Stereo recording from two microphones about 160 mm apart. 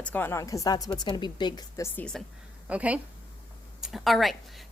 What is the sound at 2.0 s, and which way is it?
Speech, 5° left (ahead or behind).